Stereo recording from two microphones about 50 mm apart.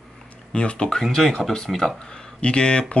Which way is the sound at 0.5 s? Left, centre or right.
Left.